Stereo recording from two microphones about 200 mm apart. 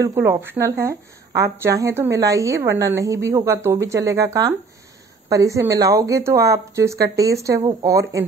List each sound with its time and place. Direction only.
0.0 s speech: 15° right (ahead or behind)